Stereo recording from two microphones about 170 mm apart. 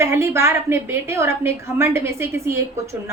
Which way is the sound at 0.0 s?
15° right (ahead or behind).